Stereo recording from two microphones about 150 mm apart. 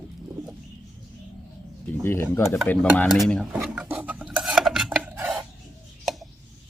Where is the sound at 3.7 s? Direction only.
5° right (ahead or behind).